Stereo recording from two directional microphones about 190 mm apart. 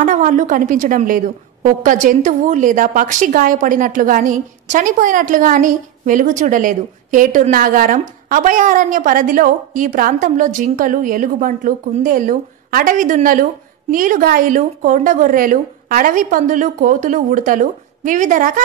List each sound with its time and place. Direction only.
0.0 s a woman's voice: 40° right (ahead or behind)